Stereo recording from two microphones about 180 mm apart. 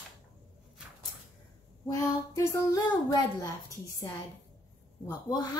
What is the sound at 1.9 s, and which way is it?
A child's voice, 15° left (ahead or behind).